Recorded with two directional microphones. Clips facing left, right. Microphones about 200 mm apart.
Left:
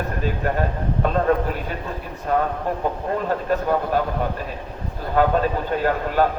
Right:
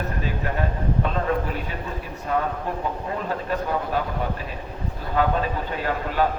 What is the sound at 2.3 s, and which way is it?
Speech, 45° left (ahead or behind).